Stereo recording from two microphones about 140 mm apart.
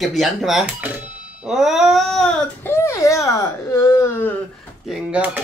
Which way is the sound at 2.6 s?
20° left (ahead or behind).